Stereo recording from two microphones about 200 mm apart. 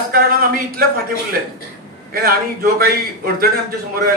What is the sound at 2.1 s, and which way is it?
A man's voice, 45° right (ahead or behind).